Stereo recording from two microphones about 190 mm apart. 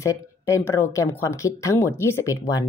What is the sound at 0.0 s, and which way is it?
Speech, 15° left (ahead or behind).